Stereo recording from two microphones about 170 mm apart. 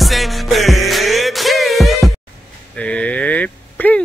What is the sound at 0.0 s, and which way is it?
Music, centre (ahead or behind).